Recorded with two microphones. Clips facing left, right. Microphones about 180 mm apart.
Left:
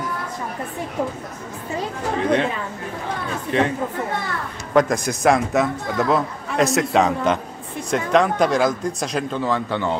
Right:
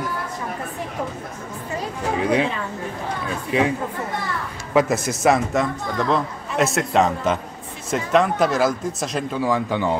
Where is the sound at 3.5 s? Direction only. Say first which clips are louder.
Even; 5° right (ahead or behind).